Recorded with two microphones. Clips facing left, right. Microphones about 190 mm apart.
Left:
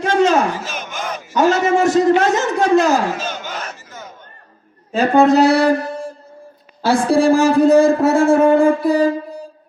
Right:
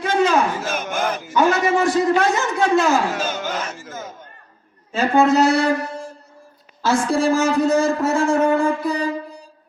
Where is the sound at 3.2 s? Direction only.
50° right (ahead or behind).